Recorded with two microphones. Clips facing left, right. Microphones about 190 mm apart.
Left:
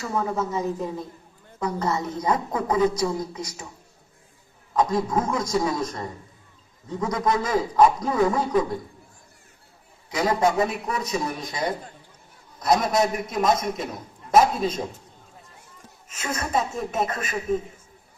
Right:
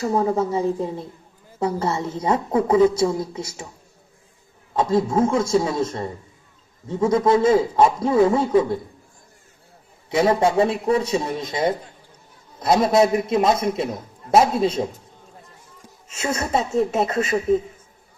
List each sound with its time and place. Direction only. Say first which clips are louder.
0.0 s a woman's voice: right 6 dB; 35° right (ahead or behind)
4.7 s a woman's voice: right 3 dB; 25° right (ahead or behind)
10.1 s a woman's voice: right 4 dB; 25° right (ahead or behind)
16.0 s a woman's voice: right 5 dB; 25° right (ahead or behind)